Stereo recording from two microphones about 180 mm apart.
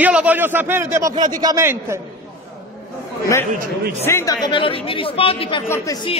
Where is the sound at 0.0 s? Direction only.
10° right (ahead or behind).